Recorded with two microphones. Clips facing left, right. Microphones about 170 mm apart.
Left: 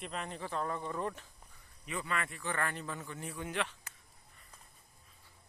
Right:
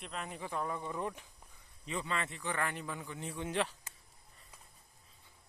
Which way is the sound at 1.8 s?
25° right (ahead or behind).